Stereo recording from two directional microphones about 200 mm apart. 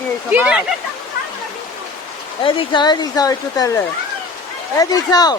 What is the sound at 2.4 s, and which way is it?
Speech, 25° left (ahead or behind).